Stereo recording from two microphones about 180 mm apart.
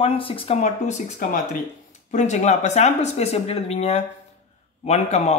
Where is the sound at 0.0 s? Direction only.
30° left (ahead or behind).